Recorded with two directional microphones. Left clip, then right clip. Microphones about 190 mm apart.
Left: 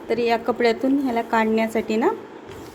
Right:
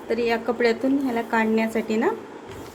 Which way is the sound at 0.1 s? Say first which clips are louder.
Left 2 dB; 20° left (ahead or behind).